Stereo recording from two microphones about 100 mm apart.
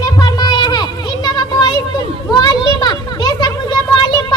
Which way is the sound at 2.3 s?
40° left (ahead or behind).